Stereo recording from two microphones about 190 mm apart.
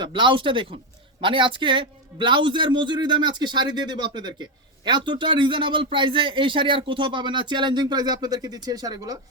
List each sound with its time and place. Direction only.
0.0 s speech: 25° right (ahead or behind)